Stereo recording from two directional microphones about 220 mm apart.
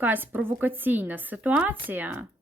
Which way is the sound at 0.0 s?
10° right (ahead or behind).